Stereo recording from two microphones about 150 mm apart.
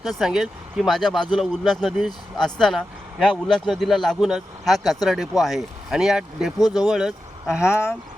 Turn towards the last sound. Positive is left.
turn(degrees=15)  # may be behind; listen again after turning